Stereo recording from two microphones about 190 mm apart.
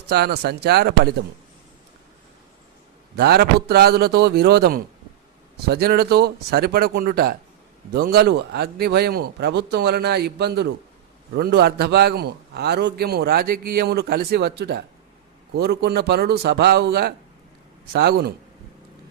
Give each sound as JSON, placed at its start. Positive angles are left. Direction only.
{"t": 0.1, "sound": "a man's voice", "side_deg": -60}
{"t": 3.2, "sound": "a man's voice", "side_deg": -55}